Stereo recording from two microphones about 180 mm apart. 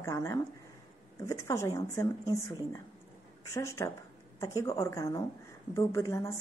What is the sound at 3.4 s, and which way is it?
A woman's voice, 15° left (ahead or behind).